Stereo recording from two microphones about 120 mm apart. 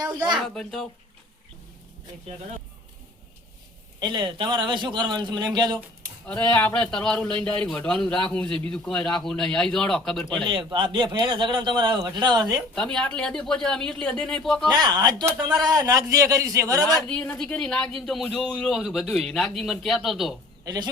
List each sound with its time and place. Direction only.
0.0 s speech: 35° right (ahead or behind)
0.3 s speech: 5° left (ahead or behind)
4.0 s a man's voice: 40° right (ahead or behind)
6.4 s speech: 15° left (ahead or behind)
10.4 s a man's voice: 45° right (ahead or behind)
12.7 s speech: 5° left (ahead or behind)
14.7 s a man's voice: 35° right (ahead or behind)
17.3 s speech: 5° left (ahead or behind)
20.7 s a man's voice: 35° right (ahead or behind)